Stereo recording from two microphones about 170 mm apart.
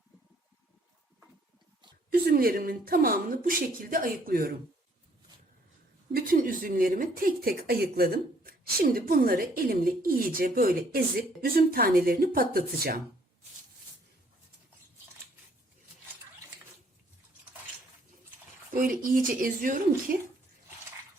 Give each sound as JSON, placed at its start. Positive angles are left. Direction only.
{"t": 2.0, "sound": "speech", "side_deg": -65}
{"t": 6.1, "sound": "speech", "side_deg": -55}
{"t": 18.7, "sound": "speech", "side_deg": -55}